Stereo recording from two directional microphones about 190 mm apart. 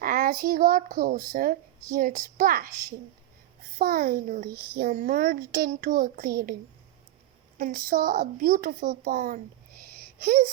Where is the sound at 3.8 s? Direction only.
50° right (ahead or behind).